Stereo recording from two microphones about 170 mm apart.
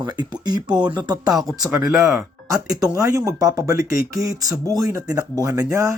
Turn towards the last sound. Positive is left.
turn(degrees=-20)  # may be behind; listen again after turning